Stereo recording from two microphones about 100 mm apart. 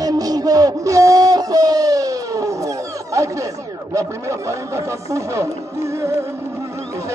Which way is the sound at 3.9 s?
30° right (ahead or behind).